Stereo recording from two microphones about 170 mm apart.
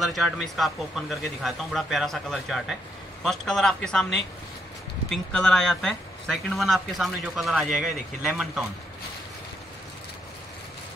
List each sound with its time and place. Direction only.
0.0 s speech: centre (ahead or behind)